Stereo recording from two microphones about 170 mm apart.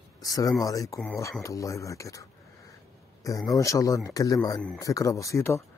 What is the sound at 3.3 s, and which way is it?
Speech, 20° left (ahead or behind).